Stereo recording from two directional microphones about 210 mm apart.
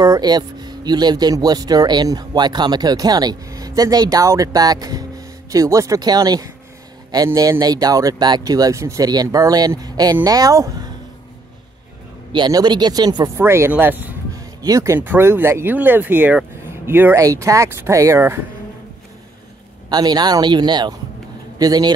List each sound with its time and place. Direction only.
0.0 s speech: 20° right (ahead or behind)
12.3 s speech: 20° right (ahead or behind)
19.9 s speech: 20° right (ahead or behind)